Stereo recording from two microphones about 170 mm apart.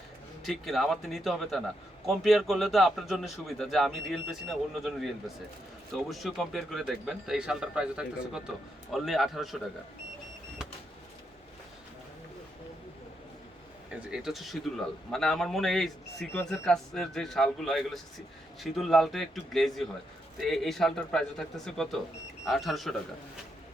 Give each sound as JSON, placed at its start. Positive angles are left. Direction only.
{"t": 0.4, "sound": "a man's voice", "side_deg": 0}
{"t": 14.1, "sound": "a man's voice", "side_deg": 0}